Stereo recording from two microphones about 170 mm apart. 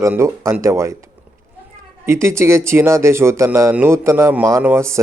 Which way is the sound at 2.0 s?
15° right (ahead or behind).